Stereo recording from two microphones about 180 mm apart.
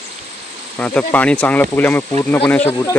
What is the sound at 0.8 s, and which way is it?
Speech, 10° left (ahead or behind).